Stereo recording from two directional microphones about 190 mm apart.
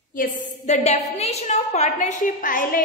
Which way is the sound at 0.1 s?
40° left (ahead or behind).